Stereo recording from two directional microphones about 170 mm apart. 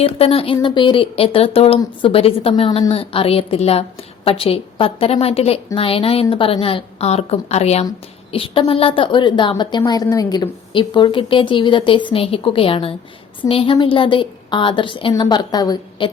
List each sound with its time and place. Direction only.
0.0 s a woman's voice: 35° left (ahead or behind)